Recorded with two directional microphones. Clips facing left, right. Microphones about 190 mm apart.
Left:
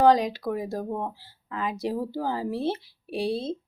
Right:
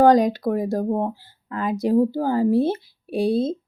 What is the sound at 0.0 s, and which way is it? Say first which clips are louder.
Speech: right 5 dB; 45° right (ahead or behind).